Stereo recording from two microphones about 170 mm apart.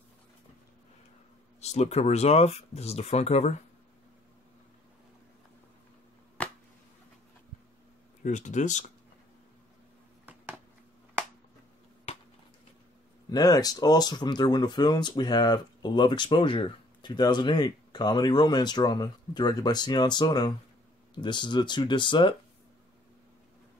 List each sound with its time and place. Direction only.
1.6 s speech: 40° left (ahead or behind)
6.4 s a sound: 10° left (ahead or behind)
8.2 s speech: 45° left (ahead or behind)
13.3 s speech: 25° left (ahead or behind)